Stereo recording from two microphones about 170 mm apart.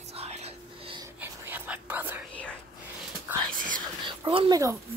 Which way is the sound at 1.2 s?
10° right (ahead or behind).